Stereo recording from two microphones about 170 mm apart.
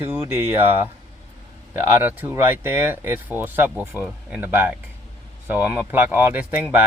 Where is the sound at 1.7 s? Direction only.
10° right (ahead or behind).